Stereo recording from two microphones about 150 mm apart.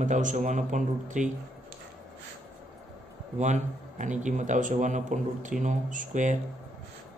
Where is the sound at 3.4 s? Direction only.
55° right (ahead or behind).